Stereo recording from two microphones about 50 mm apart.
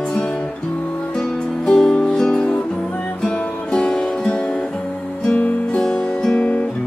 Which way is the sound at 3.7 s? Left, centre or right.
Centre.